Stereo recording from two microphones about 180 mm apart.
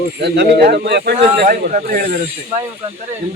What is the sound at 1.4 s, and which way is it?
Speech, 50° right (ahead or behind).